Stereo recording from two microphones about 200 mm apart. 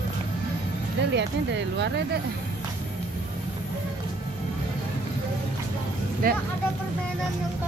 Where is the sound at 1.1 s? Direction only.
60° right (ahead or behind).